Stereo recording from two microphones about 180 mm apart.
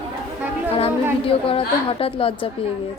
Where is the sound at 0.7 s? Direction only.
30° left (ahead or behind).